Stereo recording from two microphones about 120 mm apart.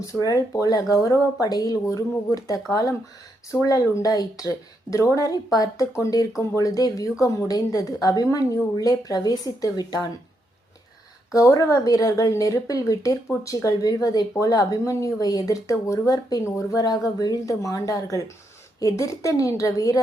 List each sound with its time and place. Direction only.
0.0 s speech: 30° left (ahead or behind)
11.3 s speech: 25° left (ahead or behind)